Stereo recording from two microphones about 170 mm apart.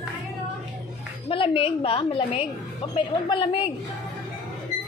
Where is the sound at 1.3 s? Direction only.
30° left (ahead or behind).